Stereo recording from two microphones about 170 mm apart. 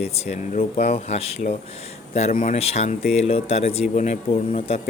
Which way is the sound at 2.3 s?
55° left (ahead or behind).